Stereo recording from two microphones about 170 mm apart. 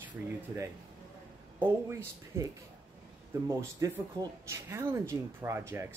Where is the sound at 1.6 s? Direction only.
15° right (ahead or behind).